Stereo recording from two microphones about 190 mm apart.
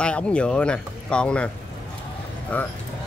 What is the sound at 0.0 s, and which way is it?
A man's voice, 5° left (ahead or behind).